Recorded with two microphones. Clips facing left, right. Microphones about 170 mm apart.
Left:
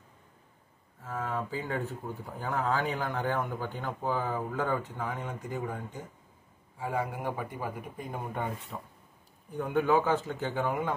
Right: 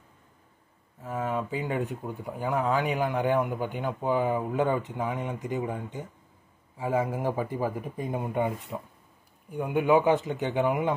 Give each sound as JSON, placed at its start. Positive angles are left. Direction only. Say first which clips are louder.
{"t": 1.0, "sound": "speech", "louder": "right 4 dB", "side_deg": -20}